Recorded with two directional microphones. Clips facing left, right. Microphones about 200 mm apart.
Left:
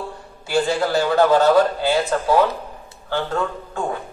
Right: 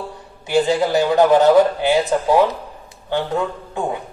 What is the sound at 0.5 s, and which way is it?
A man's voice, 20° right (ahead or behind).